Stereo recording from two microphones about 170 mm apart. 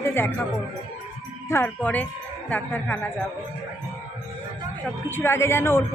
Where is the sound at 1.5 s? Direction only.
10° left (ahead or behind).